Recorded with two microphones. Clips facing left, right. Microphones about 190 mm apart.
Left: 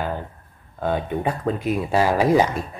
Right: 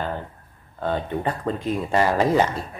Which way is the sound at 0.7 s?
10° left (ahead or behind).